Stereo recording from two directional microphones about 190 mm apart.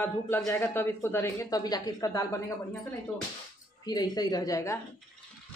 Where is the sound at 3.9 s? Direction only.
20° left (ahead or behind).